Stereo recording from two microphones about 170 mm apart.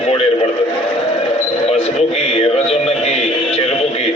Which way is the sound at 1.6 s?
35° left (ahead or behind).